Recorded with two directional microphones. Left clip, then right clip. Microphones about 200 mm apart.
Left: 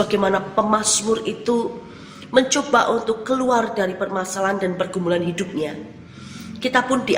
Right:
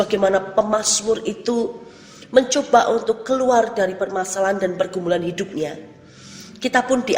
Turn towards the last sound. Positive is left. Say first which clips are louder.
# right 1 dB
turn(degrees=-30)  # may be behind; listen again after turning